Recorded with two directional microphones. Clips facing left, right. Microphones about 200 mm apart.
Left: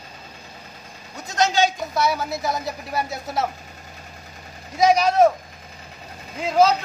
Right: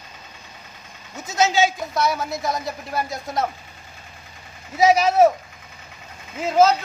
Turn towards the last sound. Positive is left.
turn(degrees=0)  # may be behind; listen again after turning